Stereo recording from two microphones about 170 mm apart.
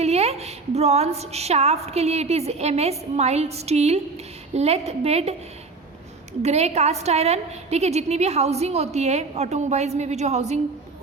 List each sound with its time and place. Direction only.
0.0 s a woman's voice: 40° right (ahead or behind)
6.4 s a woman's voice: 40° right (ahead or behind)